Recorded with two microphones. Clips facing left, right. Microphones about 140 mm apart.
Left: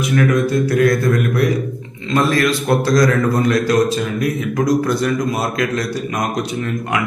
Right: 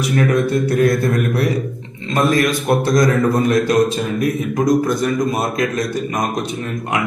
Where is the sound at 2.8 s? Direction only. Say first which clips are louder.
Even; 20° right (ahead or behind).